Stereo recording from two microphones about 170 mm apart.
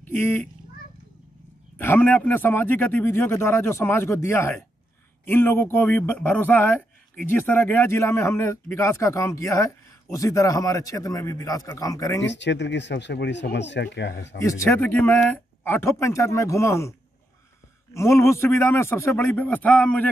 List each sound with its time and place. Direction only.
0.0 s speech: 10° left (ahead or behind)
1.8 s a man's voice: 10° left (ahead or behind)
12.3 s speech: 90° left
14.4 s speech: 15° left (ahead or behind)
17.9 s speech: 15° left (ahead or behind)